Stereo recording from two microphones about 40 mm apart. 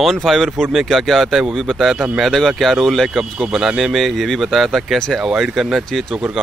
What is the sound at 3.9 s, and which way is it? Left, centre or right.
Speech, centre.